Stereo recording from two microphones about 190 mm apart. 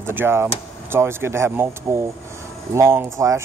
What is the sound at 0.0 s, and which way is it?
Speech, 10° right (ahead or behind).